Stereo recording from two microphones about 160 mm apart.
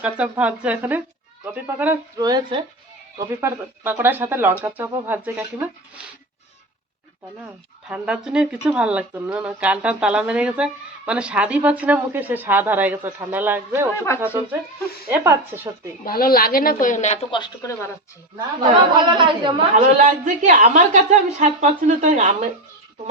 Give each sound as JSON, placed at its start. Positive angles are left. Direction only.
{"t": 0.0, "sound": "speech", "side_deg": -10}
{"t": 7.9, "sound": "speech", "side_deg": -10}
{"t": 13.9, "sound": "speech", "side_deg": 15}
{"t": 15.1, "sound": "speech", "side_deg": -10}
{"t": 16.0, "sound": "a woman's voice", "side_deg": 65}
{"t": 17.3, "sound": "speech", "side_deg": 25}
{"t": 18.9, "sound": "a woman's voice", "side_deg": -30}
{"t": 19.7, "sound": "a woman's voice", "side_deg": -50}